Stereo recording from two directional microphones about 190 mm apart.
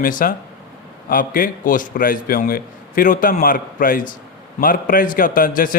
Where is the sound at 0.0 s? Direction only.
45° left (ahead or behind).